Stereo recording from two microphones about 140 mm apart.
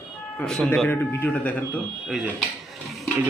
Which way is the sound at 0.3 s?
5° left (ahead or behind).